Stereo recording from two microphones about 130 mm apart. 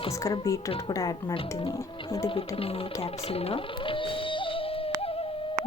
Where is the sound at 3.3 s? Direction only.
50° left (ahead or behind).